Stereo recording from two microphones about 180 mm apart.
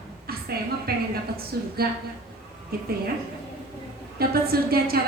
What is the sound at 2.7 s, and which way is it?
Speech, 60° right (ahead or behind).